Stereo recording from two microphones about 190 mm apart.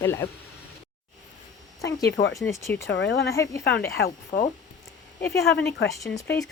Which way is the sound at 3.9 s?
55° left (ahead or behind).